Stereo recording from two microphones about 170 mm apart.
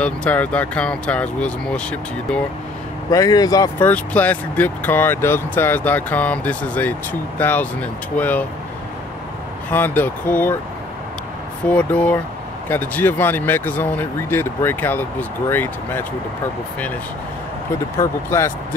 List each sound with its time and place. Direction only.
0.0 s speech: 5° left (ahead or behind)
3.1 s speech: 20° left (ahead or behind)
3.8 s speech: 10° left (ahead or behind)
9.7 s speech: 10° left (ahead or behind)
11.7 s speech: 10° left (ahead or behind)
18.3 s speech: 15° left (ahead or behind)